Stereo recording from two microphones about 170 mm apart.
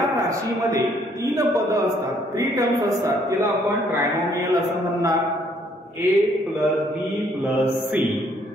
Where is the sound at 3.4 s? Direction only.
Centre (ahead or behind).